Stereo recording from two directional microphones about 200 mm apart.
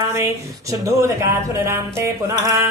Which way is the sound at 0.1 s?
15° right (ahead or behind).